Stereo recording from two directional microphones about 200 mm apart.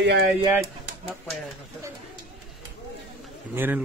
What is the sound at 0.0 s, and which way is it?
Speech, 60° right (ahead or behind).